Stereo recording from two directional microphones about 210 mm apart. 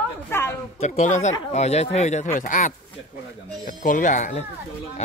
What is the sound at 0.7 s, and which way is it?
Speech, 35° left (ahead or behind).